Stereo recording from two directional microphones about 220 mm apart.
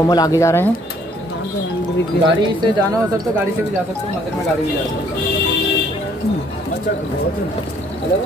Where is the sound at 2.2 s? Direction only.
50° left (ahead or behind).